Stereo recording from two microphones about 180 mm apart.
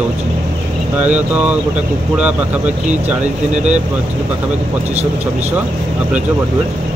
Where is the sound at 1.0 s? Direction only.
10° right (ahead or behind).